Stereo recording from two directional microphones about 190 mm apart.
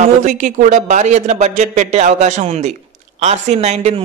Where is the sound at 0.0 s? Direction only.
40° right (ahead or behind).